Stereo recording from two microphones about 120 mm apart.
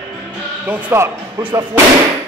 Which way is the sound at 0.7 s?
15° right (ahead or behind).